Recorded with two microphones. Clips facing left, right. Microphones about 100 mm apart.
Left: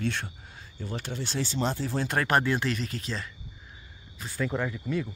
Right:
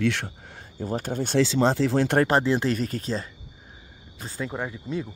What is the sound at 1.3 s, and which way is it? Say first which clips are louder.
Speech: right 9 dB; 90° right.